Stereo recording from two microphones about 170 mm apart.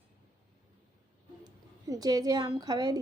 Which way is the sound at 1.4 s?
20° right (ahead or behind).